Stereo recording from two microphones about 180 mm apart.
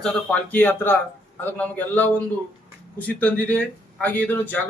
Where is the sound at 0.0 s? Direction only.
5° left (ahead or behind).